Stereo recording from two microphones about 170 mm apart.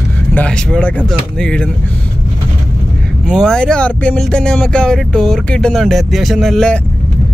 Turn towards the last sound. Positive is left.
turn(degrees=5)  # may be behind; listen again after turning